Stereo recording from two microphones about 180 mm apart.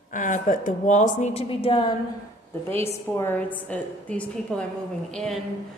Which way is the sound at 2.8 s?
15° left (ahead or behind).